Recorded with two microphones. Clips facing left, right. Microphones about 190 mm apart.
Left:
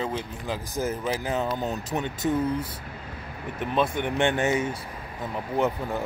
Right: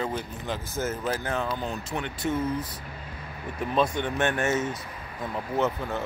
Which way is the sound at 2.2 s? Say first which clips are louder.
Left 2 dB; 35° left (ahead or behind).